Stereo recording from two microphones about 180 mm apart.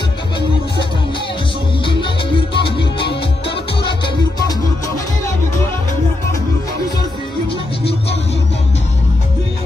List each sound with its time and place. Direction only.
1.9 s music: 30° left (ahead or behind)
4.5 s music: 20° left (ahead or behind)